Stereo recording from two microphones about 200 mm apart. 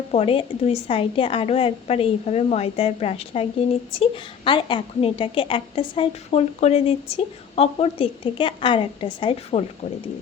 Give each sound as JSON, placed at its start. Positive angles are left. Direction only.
{"t": 0.1, "sound": "a woman's voice", "side_deg": 30}